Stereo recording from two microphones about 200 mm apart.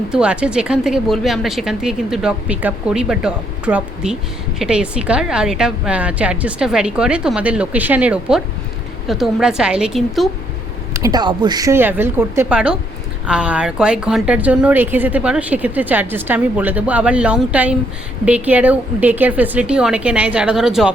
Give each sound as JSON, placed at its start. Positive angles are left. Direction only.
{"t": 0.1, "sound": "a woman's voice", "side_deg": -5}
{"t": 10.9, "sound": "a woman's voice", "side_deg": -20}